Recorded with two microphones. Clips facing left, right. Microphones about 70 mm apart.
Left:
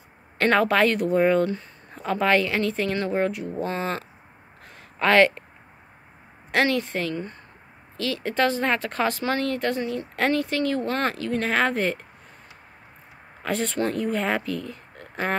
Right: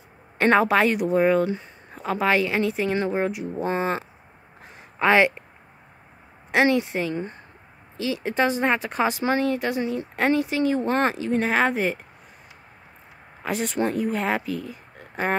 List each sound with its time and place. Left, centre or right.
0.4 s speech: centre
4.6 s a sound: centre
6.5 s speech: centre
13.4 s speech: centre